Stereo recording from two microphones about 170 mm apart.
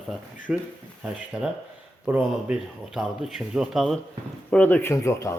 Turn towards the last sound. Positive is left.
turn(degrees=15)  # may be behind; listen again after turning